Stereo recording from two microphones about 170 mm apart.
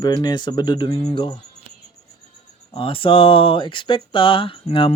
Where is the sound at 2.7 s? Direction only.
30° left (ahead or behind).